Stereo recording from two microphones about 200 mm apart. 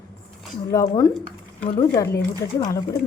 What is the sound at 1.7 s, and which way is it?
Speech, 25° left (ahead or behind).